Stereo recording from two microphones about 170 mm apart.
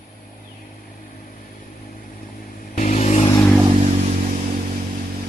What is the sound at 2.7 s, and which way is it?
Vehicle, 45° left (ahead or behind).